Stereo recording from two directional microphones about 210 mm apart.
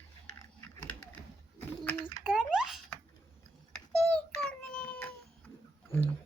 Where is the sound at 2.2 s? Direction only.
5° right (ahead or behind).